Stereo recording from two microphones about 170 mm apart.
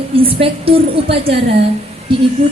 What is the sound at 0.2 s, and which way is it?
Speech, 35° right (ahead or behind).